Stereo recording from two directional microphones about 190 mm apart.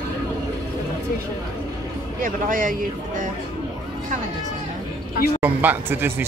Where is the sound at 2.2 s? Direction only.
45° right (ahead or behind).